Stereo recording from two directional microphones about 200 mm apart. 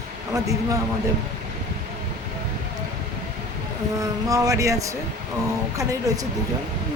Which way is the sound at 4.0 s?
15° right (ahead or behind).